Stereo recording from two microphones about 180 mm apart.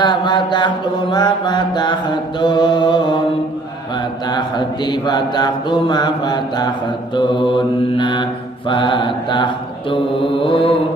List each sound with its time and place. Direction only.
0.0 s mantra: 25° left (ahead or behind)
4.3 s mantra: 25° left (ahead or behind)